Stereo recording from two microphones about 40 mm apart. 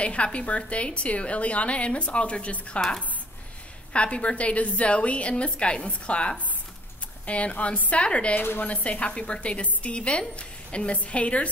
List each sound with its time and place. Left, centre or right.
0.0 s a woman's voice: left
3.9 s a woman's voice: left
8.4 s speech: left
8.6 s a woman's voice: left